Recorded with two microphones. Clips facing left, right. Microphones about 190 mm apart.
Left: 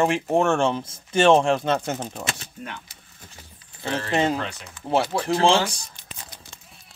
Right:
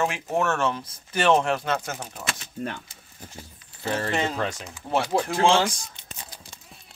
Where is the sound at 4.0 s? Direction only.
45° right (ahead or behind).